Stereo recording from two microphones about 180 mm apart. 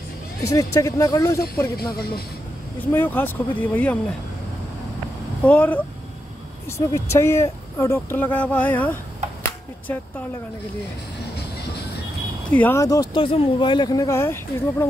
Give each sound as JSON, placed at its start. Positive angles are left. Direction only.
{"t": 0.4, "sound": "speech", "side_deg": 20}
{"t": 1.8, "sound": "speech", "side_deg": 60}
{"t": 2.9, "sound": "speech", "side_deg": 10}
{"t": 5.4, "sound": "speech", "side_deg": 10}
{"t": 6.9, "sound": "speech", "side_deg": 15}
{"t": 12.4, "sound": "speech", "side_deg": 10}